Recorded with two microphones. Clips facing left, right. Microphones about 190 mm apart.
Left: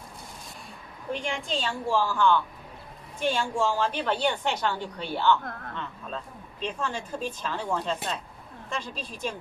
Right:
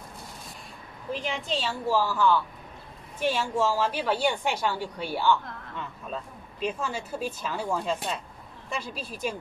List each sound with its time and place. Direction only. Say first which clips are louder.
1.1 s a woman's voice: even; 5° right (ahead or behind)
5.4 s speech: left 3 dB; 50° left (ahead or behind)
5.8 s speech: right 4 dB; 10° right (ahead or behind)